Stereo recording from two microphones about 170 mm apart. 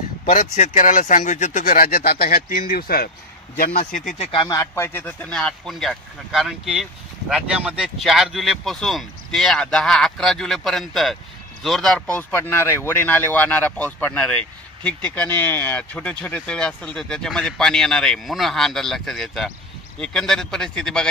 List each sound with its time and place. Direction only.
0.2 s a man's voice: 50° left (ahead or behind)
4.2 s speech: 30° left (ahead or behind); by 21.1 s 5° left (ahead or behind)